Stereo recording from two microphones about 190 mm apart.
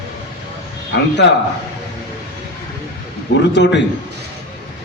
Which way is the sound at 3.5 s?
65° left (ahead or behind).